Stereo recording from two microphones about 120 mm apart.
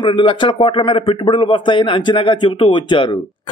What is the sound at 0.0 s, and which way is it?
A man's voice, 45° left (ahead or behind).